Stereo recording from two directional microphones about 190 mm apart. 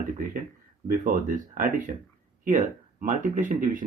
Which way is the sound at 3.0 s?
45° right (ahead or behind).